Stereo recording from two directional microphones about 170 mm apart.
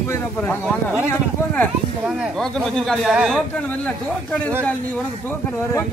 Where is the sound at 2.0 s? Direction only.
Centre (ahead or behind).